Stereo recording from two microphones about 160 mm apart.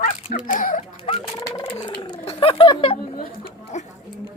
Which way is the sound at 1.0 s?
35° left (ahead or behind).